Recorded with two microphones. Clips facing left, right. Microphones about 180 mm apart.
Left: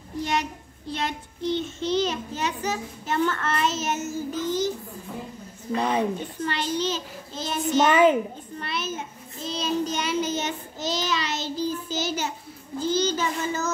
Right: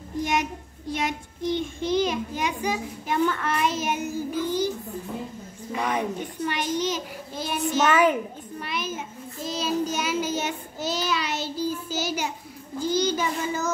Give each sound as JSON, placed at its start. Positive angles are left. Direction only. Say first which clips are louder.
{"t": 0.2, "sound": "child singing", "louder": "right 1 dB", "side_deg": -15}
{"t": 5.9, "sound": "a child's voice", "louder": "left 2 dB", "side_deg": -15}
{"t": 7.9, "sound": "a child's voice", "louder": "left 3 dB", "side_deg": 20}
{"t": 8.5, "sound": "a child's voice", "louder": "even", "side_deg": -10}